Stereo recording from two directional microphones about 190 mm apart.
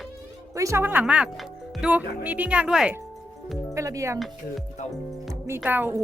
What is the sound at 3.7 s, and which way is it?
Speech, 15° right (ahead or behind).